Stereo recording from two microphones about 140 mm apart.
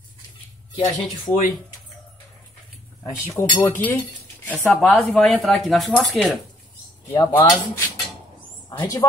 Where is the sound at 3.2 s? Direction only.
20° left (ahead or behind); by 6.4 s centre (ahead or behind).